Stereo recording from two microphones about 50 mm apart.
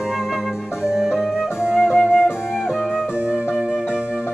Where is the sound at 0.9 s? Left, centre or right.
Centre.